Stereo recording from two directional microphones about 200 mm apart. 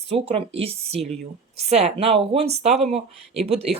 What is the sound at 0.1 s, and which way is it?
A woman's voice, 30° right (ahead or behind).